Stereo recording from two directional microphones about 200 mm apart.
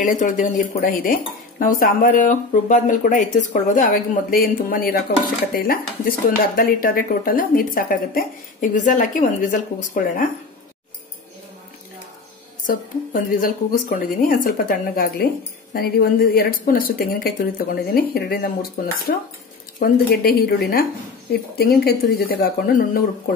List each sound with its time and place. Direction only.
0.0 s stir: 40° left (ahead or behind)
12.6 s stir: 45° left (ahead or behind)